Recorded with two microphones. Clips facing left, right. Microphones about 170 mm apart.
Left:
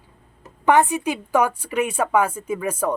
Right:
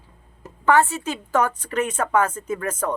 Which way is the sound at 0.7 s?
15° left (ahead or behind).